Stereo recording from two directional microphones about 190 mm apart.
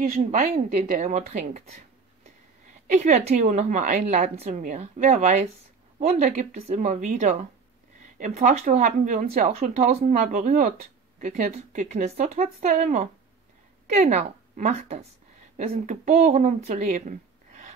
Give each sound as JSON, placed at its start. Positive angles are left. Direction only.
{"t": 0.0, "sound": "a woman's voice", "side_deg": -45}
{"t": 2.9, "sound": "a woman's voice", "side_deg": -40}